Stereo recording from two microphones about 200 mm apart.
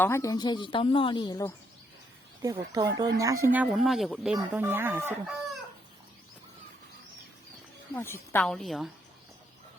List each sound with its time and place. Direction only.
0.0 s speech: 15° left (ahead or behind)
2.4 s speech: 20° right (ahead or behind)
7.9 s a woman's voice: 10° left (ahead or behind)